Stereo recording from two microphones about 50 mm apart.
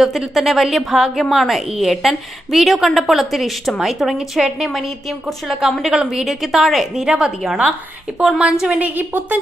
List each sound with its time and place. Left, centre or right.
0.0 s a woman's voice: centre
8.8 s a woman's voice: right